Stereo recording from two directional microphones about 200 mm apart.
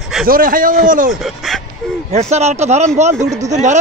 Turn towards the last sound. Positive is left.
turn(degrees=-35)  # may be behind; listen again after turning